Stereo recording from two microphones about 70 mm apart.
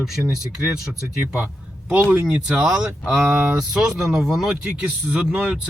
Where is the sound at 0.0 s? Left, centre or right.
Centre.